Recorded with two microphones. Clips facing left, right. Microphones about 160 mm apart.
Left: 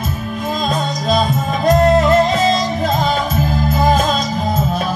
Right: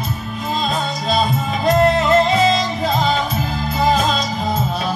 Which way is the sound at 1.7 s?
45° left (ahead or behind).